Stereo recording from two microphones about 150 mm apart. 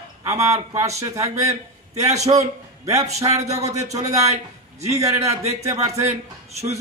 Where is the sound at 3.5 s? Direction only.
45° right (ahead or behind).